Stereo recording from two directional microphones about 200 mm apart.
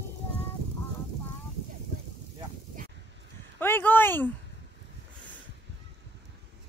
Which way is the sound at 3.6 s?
10° left (ahead or behind).